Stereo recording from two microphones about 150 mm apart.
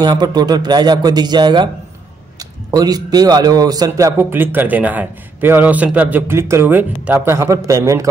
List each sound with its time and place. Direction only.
0.0 s a man's voice: 25° right (ahead or behind)